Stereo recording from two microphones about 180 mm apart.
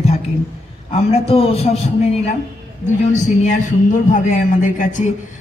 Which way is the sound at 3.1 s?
40° left (ahead or behind).